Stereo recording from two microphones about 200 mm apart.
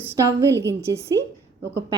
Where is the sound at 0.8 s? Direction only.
15° right (ahead or behind).